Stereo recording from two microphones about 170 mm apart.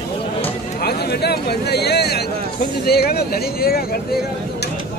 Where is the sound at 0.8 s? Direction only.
70° left (ahead or behind).